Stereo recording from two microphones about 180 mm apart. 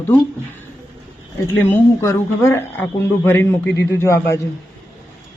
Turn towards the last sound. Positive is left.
turn(degrees=15)  # may be behind; listen again after turning